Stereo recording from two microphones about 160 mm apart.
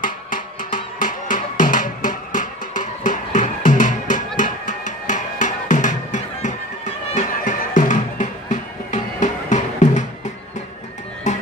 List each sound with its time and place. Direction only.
0.0 s music: 55° left (ahead or behind)
11.3 s music: 45° left (ahead or behind)